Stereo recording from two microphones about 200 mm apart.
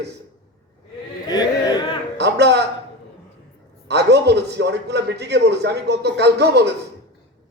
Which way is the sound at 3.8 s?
60° right (ahead or behind).